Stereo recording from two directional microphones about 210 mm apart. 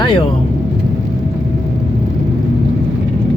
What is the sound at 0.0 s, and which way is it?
Vehicle, 25° left (ahead or behind).